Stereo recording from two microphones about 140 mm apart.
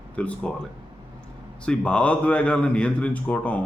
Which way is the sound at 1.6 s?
5° left (ahead or behind).